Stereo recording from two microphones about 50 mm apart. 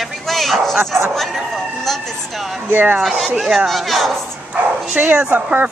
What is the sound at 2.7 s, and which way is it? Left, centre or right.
Speech, right.